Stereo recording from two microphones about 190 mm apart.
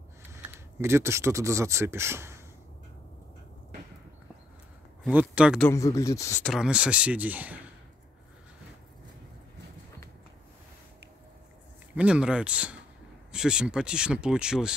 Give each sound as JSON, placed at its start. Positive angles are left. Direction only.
{"t": 0.3, "sound": "speech", "side_deg": -15}
{"t": 5.0, "sound": "speech", "side_deg": -5}
{"t": 5.6, "sound": "speech", "side_deg": 15}
{"t": 6.4, "sound": "speech", "side_deg": 0}
{"t": 11.9, "sound": "speech", "side_deg": -5}